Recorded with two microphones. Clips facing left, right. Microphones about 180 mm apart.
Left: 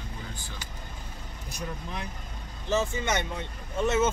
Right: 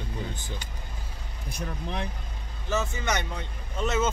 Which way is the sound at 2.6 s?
30° left (ahead or behind).